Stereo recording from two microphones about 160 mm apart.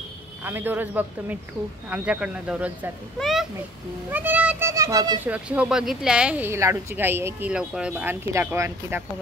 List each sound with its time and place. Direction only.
0.4 s a child's voice: 10° right (ahead or behind)
4.1 s speech: 10° right (ahead or behind)
5.2 s speech: 10° right (ahead or behind)